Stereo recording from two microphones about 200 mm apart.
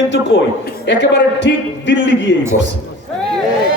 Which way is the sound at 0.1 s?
65° left (ahead or behind).